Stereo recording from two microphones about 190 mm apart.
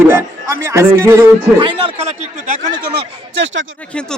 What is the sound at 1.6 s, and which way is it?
A man's voice, 25° right (ahead or behind).